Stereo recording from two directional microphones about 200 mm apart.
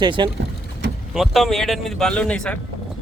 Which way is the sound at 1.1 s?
Centre (ahead or behind).